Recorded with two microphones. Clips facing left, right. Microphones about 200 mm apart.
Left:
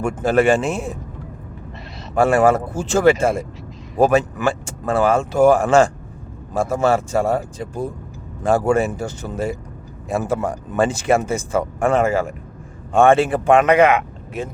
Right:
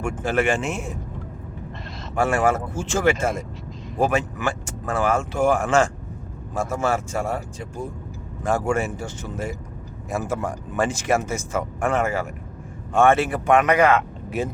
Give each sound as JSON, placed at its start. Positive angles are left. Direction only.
{"t": 0.0, "sound": "speech", "side_deg": 40}
{"t": 2.1, "sound": "speech", "side_deg": 35}